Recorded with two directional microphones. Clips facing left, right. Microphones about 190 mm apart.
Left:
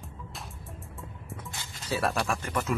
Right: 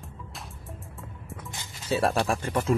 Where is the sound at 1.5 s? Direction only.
20° right (ahead or behind).